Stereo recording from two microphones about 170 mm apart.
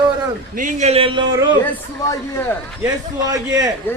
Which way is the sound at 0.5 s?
45° right (ahead or behind).